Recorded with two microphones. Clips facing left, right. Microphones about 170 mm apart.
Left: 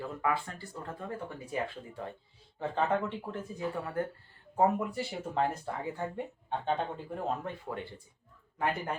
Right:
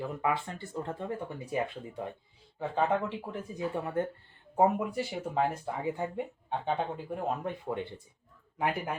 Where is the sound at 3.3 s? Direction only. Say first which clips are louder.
Right 1 dB; 10° right (ahead or behind).